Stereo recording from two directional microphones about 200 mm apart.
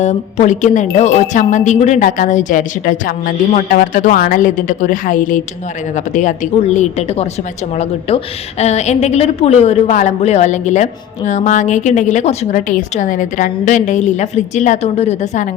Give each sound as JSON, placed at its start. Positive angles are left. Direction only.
{"t": 0.0, "sound": "speech", "side_deg": 35}